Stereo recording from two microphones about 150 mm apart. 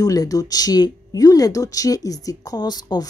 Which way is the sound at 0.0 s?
25° left (ahead or behind).